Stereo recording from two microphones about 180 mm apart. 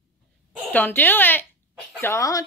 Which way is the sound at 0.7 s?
10° left (ahead or behind).